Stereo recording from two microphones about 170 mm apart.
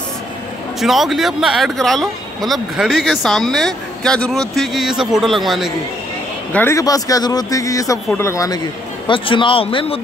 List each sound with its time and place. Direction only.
0.7 s speech: centre (ahead or behind)
6.5 s speech: 15° left (ahead or behind)
9.0 s speech: 30° left (ahead or behind)